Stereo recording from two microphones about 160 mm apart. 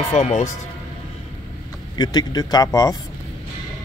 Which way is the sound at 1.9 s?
25° left (ahead or behind).